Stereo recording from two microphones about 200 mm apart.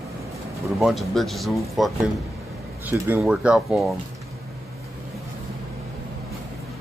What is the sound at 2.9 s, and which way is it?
Speech, 5° right (ahead or behind).